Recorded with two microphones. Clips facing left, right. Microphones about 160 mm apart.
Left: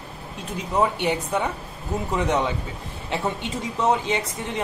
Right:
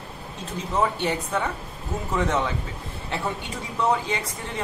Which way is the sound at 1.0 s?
15° left (ahead or behind).